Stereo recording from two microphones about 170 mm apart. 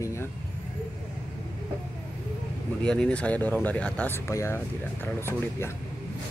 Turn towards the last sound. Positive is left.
turn(degrees=15)  # may be behind; listen again after turning